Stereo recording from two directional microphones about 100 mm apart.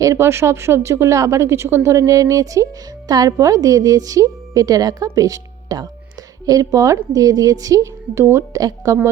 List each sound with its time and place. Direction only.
0.0 s a woman's voice: 30° right (ahead or behind)
8.5 s a woman's voice: 40° right (ahead or behind)